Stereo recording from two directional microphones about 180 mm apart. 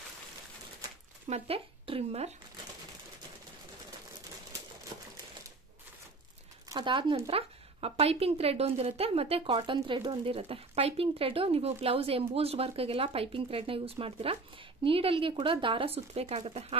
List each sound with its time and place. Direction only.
1.3 s speech: 30° right (ahead or behind)
6.7 s speech: 25° right (ahead or behind)